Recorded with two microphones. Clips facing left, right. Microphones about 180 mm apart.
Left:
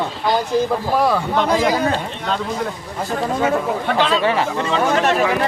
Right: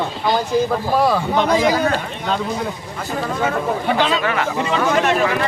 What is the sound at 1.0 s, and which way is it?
Speech, 10° right (ahead or behind).